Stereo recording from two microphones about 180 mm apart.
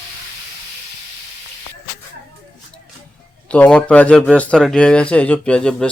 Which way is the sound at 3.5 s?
5° left (ahead or behind).